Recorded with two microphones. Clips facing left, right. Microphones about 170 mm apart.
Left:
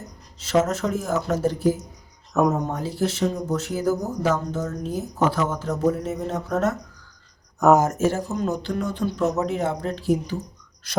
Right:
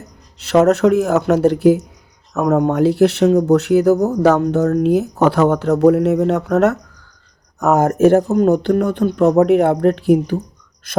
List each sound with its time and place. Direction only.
0.3 s speech: 70° right (ahead or behind)
7.8 s speech: 60° right (ahead or behind)